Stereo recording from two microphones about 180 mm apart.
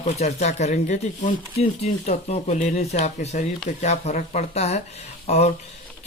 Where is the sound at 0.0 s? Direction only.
35° left (ahead or behind).